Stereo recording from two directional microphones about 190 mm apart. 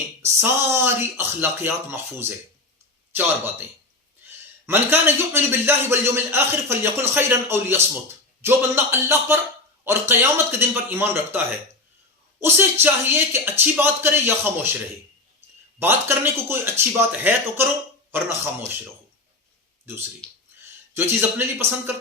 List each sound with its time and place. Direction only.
0.2 s a man's voice: 15° right (ahead or behind)
12.4 s a man's voice: 10° right (ahead or behind)
15.8 s a man's voice: 10° right (ahead or behind)
20.2 s speech: 5° left (ahead or behind)
20.9 s a man's voice: 10° right (ahead or behind)